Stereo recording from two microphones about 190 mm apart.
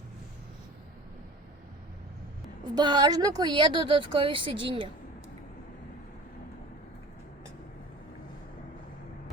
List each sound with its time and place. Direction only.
2.7 s speech: 20° right (ahead or behind)